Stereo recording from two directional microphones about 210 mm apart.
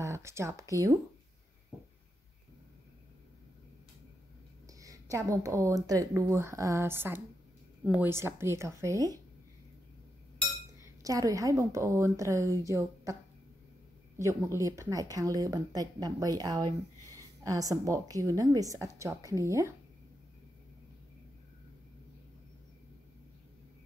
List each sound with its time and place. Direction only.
0.0 s speech: 15° right (ahead or behind)
4.7 s a woman's voice: 15° right (ahead or behind)
11.0 s a woman's voice: 15° right (ahead or behind)
14.6 s a woman's voice: 15° right (ahead or behind)